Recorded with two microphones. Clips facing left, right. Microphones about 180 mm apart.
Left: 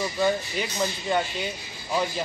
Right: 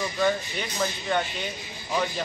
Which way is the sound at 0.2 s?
10° left (ahead or behind).